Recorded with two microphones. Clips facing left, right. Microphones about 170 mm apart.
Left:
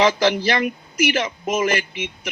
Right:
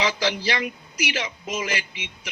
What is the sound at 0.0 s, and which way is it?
A man's voice, 50° left (ahead or behind).